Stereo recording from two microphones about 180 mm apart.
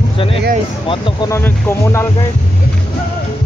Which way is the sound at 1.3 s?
15° left (ahead or behind).